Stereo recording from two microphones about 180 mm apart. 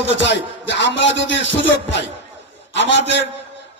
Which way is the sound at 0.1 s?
85° left.